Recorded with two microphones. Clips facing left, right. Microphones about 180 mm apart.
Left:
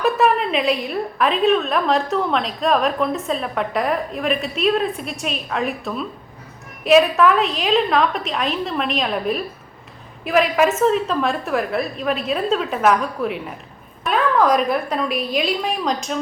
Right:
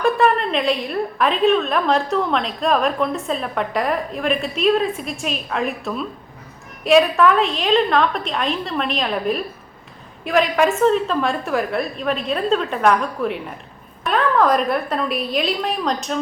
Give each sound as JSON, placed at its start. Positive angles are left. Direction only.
{"t": 0.0, "sound": "a woman's voice", "side_deg": 5}